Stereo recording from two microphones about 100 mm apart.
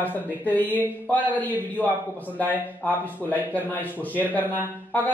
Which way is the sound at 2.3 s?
15° left (ahead or behind).